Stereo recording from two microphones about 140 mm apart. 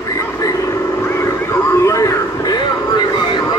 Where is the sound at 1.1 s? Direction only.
20° left (ahead or behind).